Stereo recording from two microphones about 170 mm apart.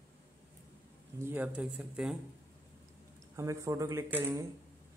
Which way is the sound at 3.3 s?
15° right (ahead or behind).